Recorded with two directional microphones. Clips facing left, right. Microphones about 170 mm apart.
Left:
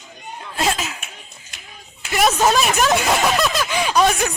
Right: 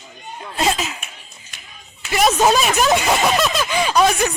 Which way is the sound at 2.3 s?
15° right (ahead or behind).